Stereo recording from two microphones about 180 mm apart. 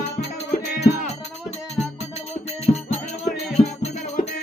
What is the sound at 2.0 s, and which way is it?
Music, 35° left (ahead or behind).